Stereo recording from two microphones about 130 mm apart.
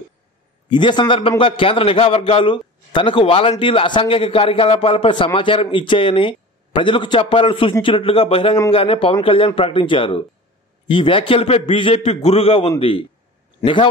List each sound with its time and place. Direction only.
0.7 s a man's voice: 35° left (ahead or behind)